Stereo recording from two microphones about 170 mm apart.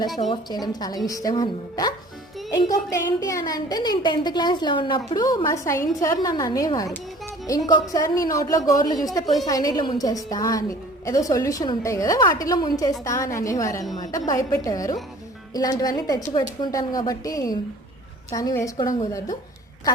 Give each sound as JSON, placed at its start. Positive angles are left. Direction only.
{"t": 0.3, "sound": "a woman's voice", "side_deg": 25}
{"t": 7.9, "sound": "a woman's voice", "side_deg": 20}
{"t": 9.2, "sound": "a woman's voice", "side_deg": 0}
{"t": 9.5, "sound": "a woman's voice", "side_deg": 20}